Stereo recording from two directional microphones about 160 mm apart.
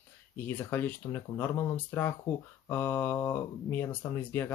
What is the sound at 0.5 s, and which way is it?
Speech, 15° left (ahead or behind).